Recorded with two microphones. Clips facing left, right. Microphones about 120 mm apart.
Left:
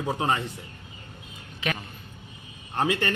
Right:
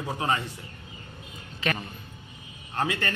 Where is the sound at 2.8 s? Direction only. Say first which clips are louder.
Left 3 dB; 20° left (ahead or behind).